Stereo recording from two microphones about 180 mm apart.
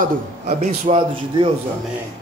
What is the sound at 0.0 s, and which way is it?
Speech, 50° right (ahead or behind).